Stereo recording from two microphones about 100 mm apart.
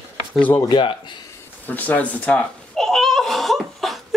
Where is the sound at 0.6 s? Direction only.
50° left (ahead or behind).